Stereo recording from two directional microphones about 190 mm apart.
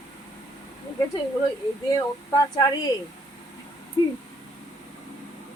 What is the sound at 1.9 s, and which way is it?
Speech, 20° left (ahead or behind).